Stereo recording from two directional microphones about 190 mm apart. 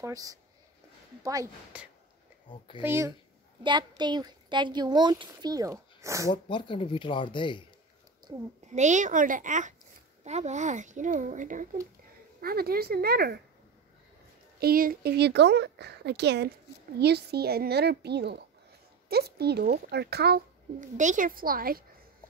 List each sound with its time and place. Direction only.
0.0 s speech: 20° right (ahead or behind)
1.7 s speech: 5° right (ahead or behind)
6.3 s speech: 25° left (ahead or behind)
8.3 s speech: 20° right (ahead or behind)
8.6 s speech: 40° right (ahead or behind)
12.4 s speech: 55° right (ahead or behind)
14.6 s speech: 50° right (ahead or behind)
20.8 s a woman's voice: 40° right (ahead or behind)